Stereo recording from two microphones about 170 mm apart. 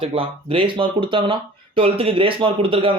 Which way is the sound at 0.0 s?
30° right (ahead or behind).